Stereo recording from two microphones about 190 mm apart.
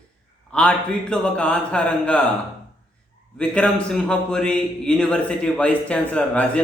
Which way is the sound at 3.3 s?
5° left (ahead or behind).